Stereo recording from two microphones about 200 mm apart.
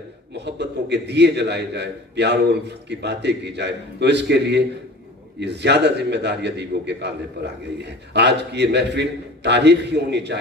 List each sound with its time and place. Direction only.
0.3 s a man's voice: 60° right (ahead or behind)